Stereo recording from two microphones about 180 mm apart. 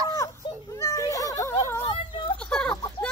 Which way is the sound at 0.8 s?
20° left (ahead or behind).